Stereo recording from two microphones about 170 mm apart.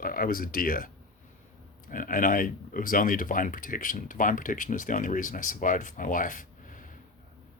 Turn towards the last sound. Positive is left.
turn(degrees=50)  # may be behind; listen again after turning